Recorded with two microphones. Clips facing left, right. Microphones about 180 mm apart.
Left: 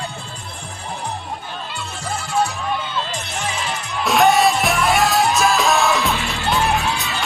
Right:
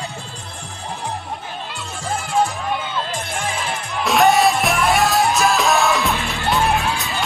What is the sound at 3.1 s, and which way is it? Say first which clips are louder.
Music: right 2 dB; 50° right (ahead or behind).